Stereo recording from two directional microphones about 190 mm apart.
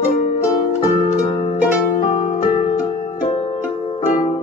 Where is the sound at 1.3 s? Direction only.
25° left (ahead or behind).